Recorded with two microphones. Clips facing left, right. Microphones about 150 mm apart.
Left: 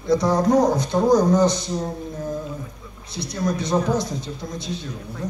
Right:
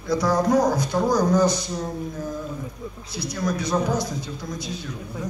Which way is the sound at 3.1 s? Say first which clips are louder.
Left 2 dB; 25° left (ahead or behind).